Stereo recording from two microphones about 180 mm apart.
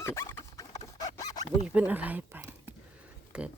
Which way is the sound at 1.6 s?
5° right (ahead or behind).